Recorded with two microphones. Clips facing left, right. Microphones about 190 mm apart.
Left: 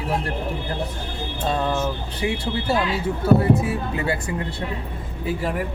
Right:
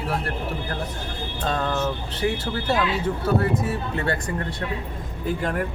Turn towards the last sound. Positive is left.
turn(degrees=5)  # may be behind; listen again after turning